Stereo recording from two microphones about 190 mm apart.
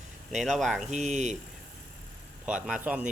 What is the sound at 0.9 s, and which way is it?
Speech, 40° right (ahead or behind).